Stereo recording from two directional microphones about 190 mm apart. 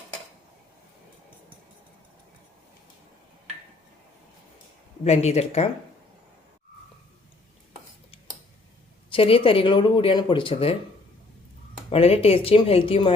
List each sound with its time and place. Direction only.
5.0 s speech: 35° left (ahead or behind)
9.0 s speech: 30° left (ahead or behind)
11.9 s speech: 30° left (ahead or behind)